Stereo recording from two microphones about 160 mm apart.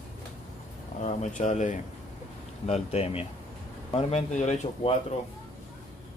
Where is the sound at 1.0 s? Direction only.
50° left (ahead or behind).